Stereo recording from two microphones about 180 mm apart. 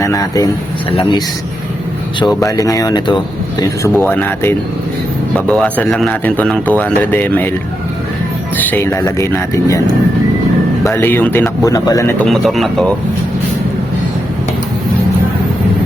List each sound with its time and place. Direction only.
0.0 s speech: 20° left (ahead or behind)
0.9 s speech: 30° left (ahead or behind)
2.2 s speech: 20° left (ahead or behind)
8.5 s speech: 10° left (ahead or behind)
10.8 s speech: 10° left (ahead or behind)
12.2 s speech: centre (ahead or behind)